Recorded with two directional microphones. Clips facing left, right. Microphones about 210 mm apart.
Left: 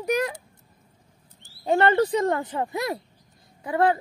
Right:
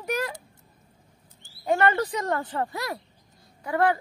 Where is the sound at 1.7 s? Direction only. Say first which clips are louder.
Left 3 dB; 30° left (ahead or behind).